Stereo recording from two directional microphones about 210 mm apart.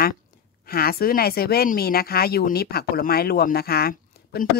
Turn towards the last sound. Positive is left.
turn(degrees=45)  # may be behind; listen again after turning